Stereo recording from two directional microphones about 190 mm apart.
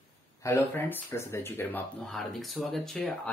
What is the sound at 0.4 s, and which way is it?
Speech, 15° left (ahead or behind).